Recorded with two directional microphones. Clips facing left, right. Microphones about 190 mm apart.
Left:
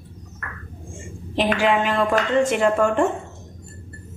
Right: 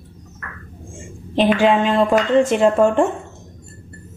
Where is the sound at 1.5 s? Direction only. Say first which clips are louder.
Right 3 dB; 25° right (ahead or behind).